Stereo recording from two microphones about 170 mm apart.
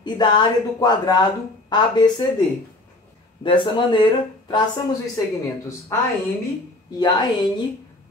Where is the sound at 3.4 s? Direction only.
30° left (ahead or behind).